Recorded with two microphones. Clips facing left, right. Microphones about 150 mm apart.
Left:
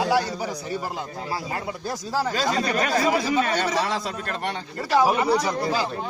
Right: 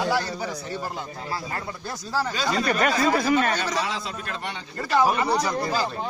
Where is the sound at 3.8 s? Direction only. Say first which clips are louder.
Left 3 dB; 45° left (ahead or behind).